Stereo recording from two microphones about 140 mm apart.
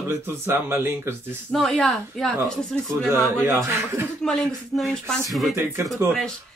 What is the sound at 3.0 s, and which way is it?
Speech, 15° right (ahead or behind).